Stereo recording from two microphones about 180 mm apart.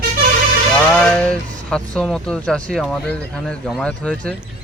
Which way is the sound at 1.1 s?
5° left (ahead or behind).